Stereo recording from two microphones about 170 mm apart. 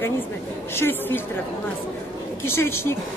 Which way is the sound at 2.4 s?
15° left (ahead or behind).